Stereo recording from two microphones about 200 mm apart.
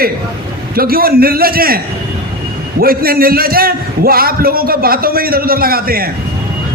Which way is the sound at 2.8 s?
50° right (ahead or behind).